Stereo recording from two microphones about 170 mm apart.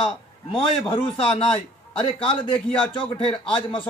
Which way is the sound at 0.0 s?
30° left (ahead or behind).